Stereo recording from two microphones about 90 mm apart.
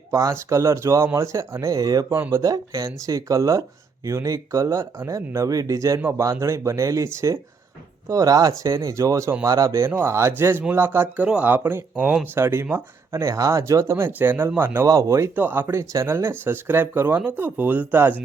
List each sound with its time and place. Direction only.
0.1 s speech: 35° right (ahead or behind)
2.0 s speech: 25° right (ahead or behind)
2.4 s speech: 40° right (ahead or behind); by 14.8 s 25° right (ahead or behind)
14.8 s speech: 35° right (ahead or behind)
15.4 s speech: 25° right (ahead or behind)